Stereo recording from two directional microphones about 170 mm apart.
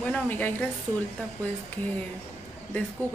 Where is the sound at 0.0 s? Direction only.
10° left (ahead or behind).